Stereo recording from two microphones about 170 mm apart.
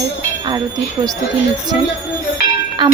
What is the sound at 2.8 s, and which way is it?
Speech, 25° right (ahead or behind).